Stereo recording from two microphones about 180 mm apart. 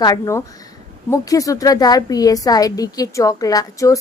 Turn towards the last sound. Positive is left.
turn(degrees=20)  # may be behind; listen again after turning